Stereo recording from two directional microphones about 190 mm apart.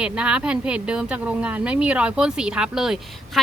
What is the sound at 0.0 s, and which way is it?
A woman's voice, 5° right (ahead or behind).